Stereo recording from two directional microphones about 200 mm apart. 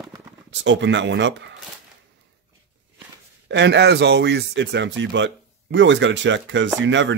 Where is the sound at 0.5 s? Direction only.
65° right (ahead or behind).